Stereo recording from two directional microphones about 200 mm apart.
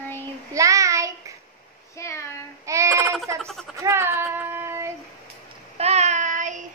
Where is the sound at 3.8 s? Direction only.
15° right (ahead or behind).